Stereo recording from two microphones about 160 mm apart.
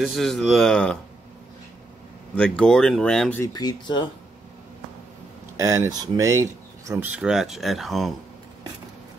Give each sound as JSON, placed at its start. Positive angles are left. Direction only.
{"t": 0.0, "sound": "speech", "side_deg": 0}
{"t": 2.3, "sound": "speech", "side_deg": 5}
{"t": 3.5, "sound": "speech", "side_deg": 25}
{"t": 5.6, "sound": "speech", "side_deg": -20}
{"t": 7.1, "sound": "speech", "side_deg": -5}